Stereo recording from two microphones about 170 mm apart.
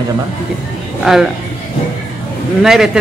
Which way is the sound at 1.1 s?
Centre (ahead or behind).